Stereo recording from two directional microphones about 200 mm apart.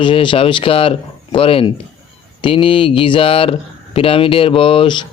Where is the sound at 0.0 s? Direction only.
25° left (ahead or behind).